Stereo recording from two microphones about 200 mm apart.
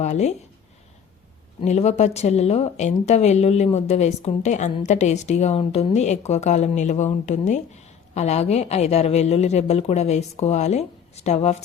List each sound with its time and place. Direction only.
0.0 s speech: 35° left (ahead or behind)
1.6 s speech: 35° left (ahead or behind)